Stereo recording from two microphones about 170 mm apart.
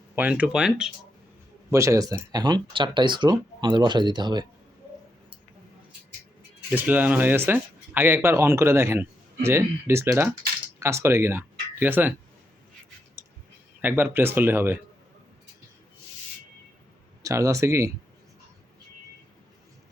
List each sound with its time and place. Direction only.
0.2 s speech: 10° right (ahead or behind)
1.7 s speech: 20° right (ahead or behind)
6.7 s speech: 10° right (ahead or behind)
13.8 s speech: 10° right (ahead or behind)
17.2 s speech: 20° right (ahead or behind)